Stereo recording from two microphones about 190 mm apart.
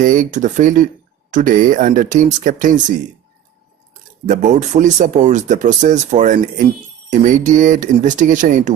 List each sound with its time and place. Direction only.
0.0 s speech: 45° right (ahead or behind)
4.3 s speech: 40° right (ahead or behind)